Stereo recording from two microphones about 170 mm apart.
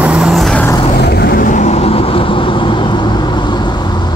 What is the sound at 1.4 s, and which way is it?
Vehicle, 45° left (ahead or behind).